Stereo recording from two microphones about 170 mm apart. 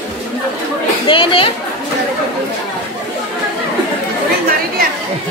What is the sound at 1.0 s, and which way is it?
Speech, 30° left (ahead or behind).